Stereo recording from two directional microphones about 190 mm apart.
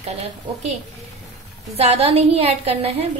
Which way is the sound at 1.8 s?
35° right (ahead or behind).